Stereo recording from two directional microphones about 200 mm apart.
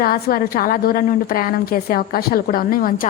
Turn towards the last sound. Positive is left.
turn(degrees=45)  # may be behind; listen again after turning